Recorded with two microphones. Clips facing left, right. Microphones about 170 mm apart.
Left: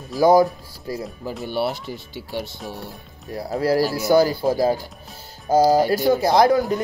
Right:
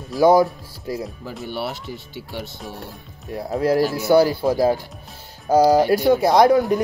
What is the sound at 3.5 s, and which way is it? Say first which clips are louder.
Speech: right 1 dB; 5° left (ahead or behind).